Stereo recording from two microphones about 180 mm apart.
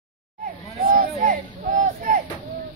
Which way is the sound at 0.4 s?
50° right (ahead or behind).